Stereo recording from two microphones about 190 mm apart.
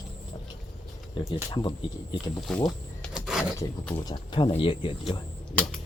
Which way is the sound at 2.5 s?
5° left (ahead or behind).